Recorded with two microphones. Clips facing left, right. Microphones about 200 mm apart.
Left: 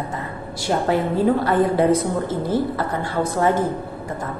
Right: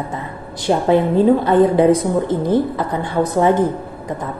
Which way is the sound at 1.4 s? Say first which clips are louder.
Right 5 dB; 25° right (ahead or behind).